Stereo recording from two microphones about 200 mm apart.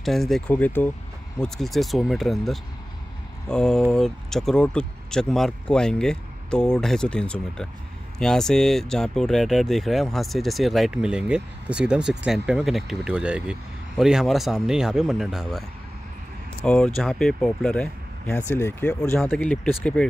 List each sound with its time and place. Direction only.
0.0 s speech: centre (ahead or behind)
16.6 s speech: 5° left (ahead or behind)